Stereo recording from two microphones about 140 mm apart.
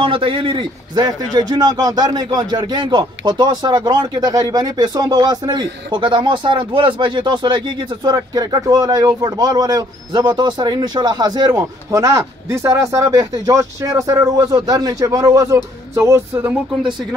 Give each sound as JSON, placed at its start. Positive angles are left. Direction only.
{"t": 0.0, "sound": "a man's voice", "side_deg": -40}